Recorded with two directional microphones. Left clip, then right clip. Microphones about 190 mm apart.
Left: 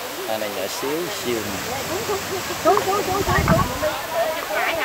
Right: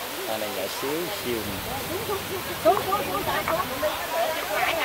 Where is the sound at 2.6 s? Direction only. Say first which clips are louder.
Left 3 dB; 50° right (ahead or behind).